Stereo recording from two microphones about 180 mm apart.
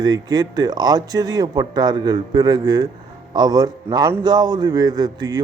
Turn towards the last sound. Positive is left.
turn(degrees=-20)  # may be behind; listen again after turning